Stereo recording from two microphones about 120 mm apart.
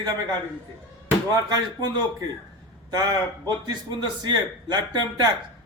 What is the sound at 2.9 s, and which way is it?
Speech, 35° right (ahead or behind).